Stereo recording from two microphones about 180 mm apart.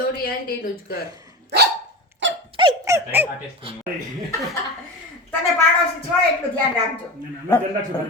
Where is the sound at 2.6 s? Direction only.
25° right (ahead or behind).